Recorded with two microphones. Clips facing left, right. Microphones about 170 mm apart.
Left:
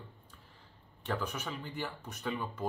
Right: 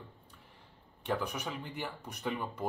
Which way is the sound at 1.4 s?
15° right (ahead or behind).